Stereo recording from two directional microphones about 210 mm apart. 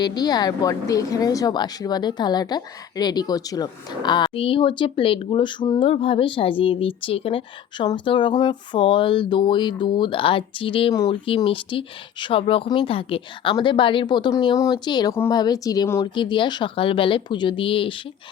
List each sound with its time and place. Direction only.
0.0 s a woman's voice: 20° left (ahead or behind)